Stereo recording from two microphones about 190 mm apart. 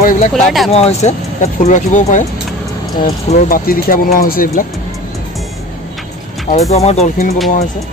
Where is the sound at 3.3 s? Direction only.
50° left (ahead or behind).